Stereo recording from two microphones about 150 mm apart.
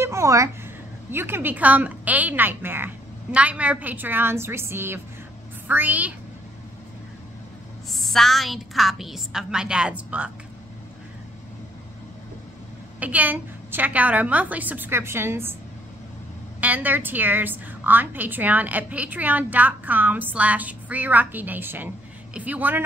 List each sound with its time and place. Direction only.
0.0 s a sound: 20° right (ahead or behind)
1.1 s a woman's voice: 15° right (ahead or behind)
7.9 s a woman's voice: centre (ahead or behind)
13.0 s a woman's voice: 10° right (ahead or behind)
16.6 s a woman's voice: 10° right (ahead or behind)